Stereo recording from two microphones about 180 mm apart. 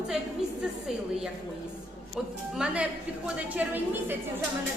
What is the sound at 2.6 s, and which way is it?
A woman's voice, 5° right (ahead or behind).